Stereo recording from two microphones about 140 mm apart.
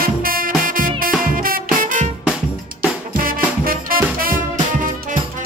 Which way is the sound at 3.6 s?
90° right.